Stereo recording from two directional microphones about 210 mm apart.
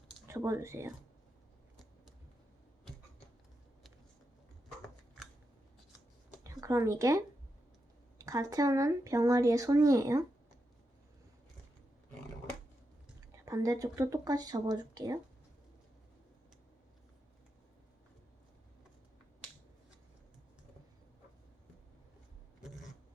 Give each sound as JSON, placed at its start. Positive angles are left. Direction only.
{"t": 0.3, "sound": "speech", "side_deg": -15}
{"t": 6.4, "sound": "speech", "side_deg": -15}
{"t": 8.2, "sound": "speech", "side_deg": -15}
{"t": 13.3, "sound": "speech", "side_deg": -15}
{"t": 22.6, "sound": "a sound", "side_deg": 0}